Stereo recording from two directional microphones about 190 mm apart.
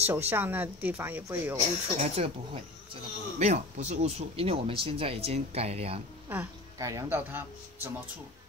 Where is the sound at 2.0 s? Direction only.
30° right (ahead or behind).